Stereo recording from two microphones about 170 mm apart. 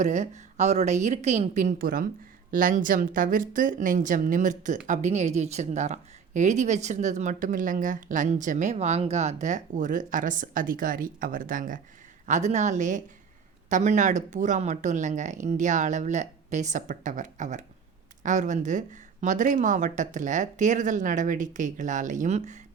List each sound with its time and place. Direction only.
0.0 s a woman's voice: 45° right (ahead or behind)